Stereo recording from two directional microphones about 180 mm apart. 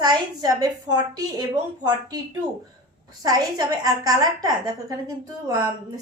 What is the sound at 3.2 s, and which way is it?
A woman's voice, 20° right (ahead or behind).